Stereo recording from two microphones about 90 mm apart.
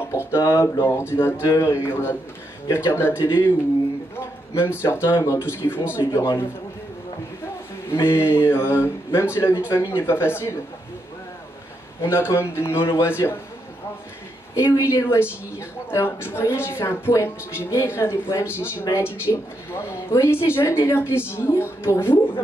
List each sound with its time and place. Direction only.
0.1 s speech: 30° left (ahead or behind)
7.9 s speech: 25° left (ahead or behind)
12.0 s speech: 30° left (ahead or behind)
14.5 s speech: 30° left (ahead or behind)